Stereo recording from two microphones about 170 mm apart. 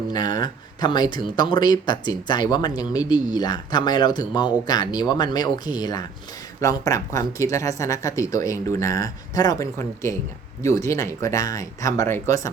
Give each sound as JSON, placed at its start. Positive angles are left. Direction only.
{"t": 0.1, "sound": "speech", "side_deg": 25}